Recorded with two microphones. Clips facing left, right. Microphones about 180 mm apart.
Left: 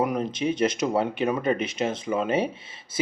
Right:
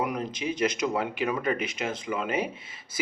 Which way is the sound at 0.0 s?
25° left (ahead or behind).